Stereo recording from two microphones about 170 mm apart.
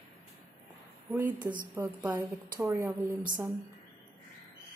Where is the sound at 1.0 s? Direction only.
15° right (ahead or behind).